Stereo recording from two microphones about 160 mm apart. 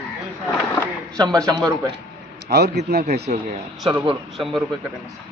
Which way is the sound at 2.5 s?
85° right.